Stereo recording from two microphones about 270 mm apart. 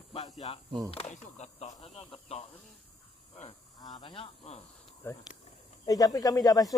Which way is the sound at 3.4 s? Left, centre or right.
Centre.